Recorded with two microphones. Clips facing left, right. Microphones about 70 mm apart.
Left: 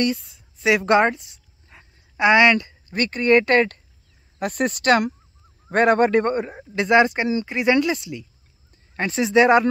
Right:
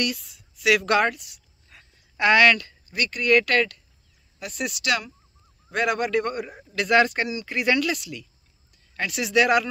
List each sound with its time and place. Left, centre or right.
0.0 s music: left
2.9 s speech: left
4.4 s speech: left